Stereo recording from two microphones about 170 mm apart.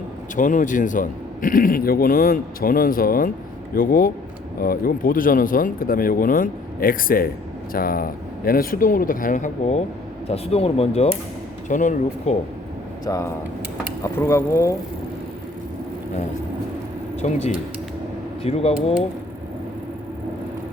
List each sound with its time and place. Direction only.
0.3 s a man's voice: 50° left (ahead or behind)
13.1 s speech: 20° left (ahead or behind)
14.0 s mechanisms: 15° left (ahead or behind)
17.2 s speech: 40° left (ahead or behind)